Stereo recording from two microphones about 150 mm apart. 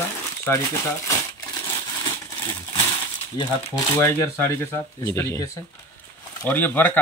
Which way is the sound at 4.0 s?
15° left (ahead or behind).